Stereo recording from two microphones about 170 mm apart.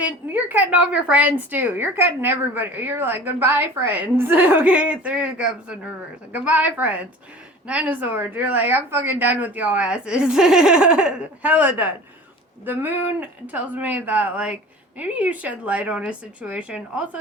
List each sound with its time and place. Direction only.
0.0 s a woman's voice: 10° right (ahead or behind)